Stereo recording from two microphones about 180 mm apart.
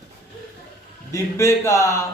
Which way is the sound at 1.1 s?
15° left (ahead or behind).